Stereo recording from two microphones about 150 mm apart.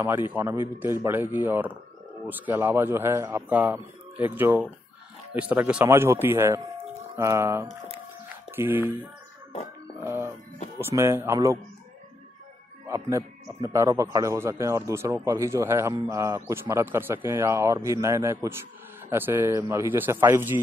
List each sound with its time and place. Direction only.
0.3 s speech: 15° right (ahead or behind)
10.0 s music: 15° right (ahead or behind)
10.8 s speech: 15° right (ahead or behind)
12.8 s a man's voice: 20° right (ahead or behind)